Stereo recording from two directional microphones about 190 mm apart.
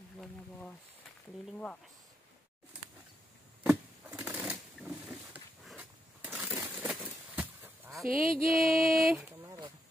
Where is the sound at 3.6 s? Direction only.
5° right (ahead or behind).